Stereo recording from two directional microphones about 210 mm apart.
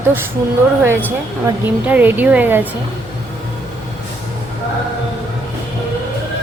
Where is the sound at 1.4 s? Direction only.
10° right (ahead or behind).